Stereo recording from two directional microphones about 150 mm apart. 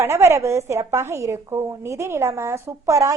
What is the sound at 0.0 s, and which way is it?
A woman's voice, 15° right (ahead or behind).